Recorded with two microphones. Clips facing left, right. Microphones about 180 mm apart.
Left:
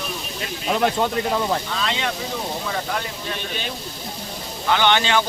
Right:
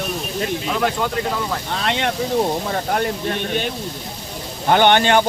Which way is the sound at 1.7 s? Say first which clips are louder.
Right 4 dB; 60° right (ahead or behind).